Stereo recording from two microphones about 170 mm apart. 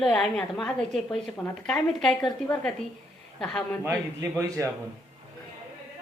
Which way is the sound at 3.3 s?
5° left (ahead or behind).